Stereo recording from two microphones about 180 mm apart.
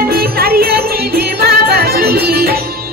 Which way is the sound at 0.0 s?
55° right (ahead or behind).